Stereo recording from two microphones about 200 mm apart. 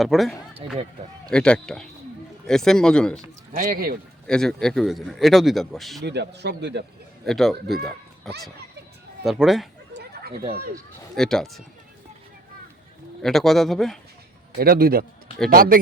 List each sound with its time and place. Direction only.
0.0 s speech: centre (ahead or behind)
3.5 s a man's voice: 45° right (ahead or behind)
4.3 s speech: 5° left (ahead or behind)
6.1 s a man's voice: 60° right (ahead or behind)
7.3 s speech: centre (ahead or behind)
10.0 s a sound: 50° right (ahead or behind)
11.1 s speech: centre (ahead or behind)
13.2 s speech: centre (ahead or behind)
14.6 s a man's voice: 50° right (ahead or behind)